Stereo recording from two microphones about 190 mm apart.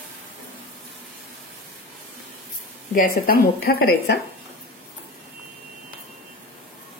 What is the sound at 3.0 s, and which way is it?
Speech, 50° left (ahead or behind).